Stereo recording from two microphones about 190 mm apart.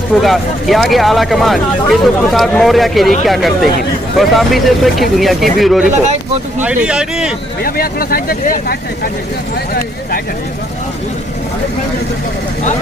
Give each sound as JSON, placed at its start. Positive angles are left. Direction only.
{"t": 0.2, "sound": "speech", "side_deg": 0}
{"t": 7.6, "sound": "speech", "side_deg": 50}